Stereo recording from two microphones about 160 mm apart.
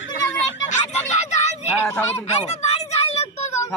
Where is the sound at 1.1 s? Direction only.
45° left (ahead or behind).